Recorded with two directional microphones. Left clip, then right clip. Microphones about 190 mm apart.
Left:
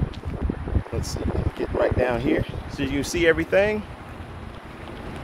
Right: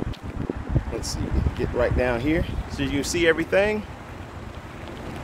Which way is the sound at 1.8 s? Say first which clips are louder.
Left 1 dB; 5° left (ahead or behind).